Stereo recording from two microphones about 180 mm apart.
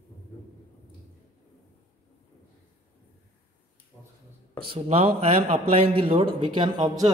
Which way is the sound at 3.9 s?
5° left (ahead or behind).